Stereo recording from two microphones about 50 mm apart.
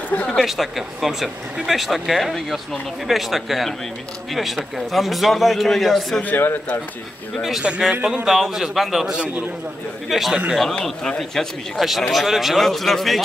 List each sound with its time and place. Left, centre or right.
0.1 s a woman's voice: left
0.4 s speech: centre
6.2 s speech: left
7.9 s a man's voice: right
8.3 s speech: centre
9.1 s a man's voice: right
10.0 s a man's voice: centre